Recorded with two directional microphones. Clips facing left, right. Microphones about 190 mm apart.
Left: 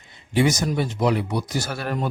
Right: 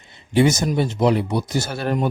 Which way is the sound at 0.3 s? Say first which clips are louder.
Right 3 dB; 25° right (ahead or behind).